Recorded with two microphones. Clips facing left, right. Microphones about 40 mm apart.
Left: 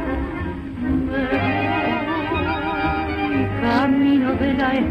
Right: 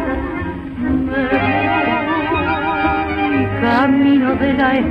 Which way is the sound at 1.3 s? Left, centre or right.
Right.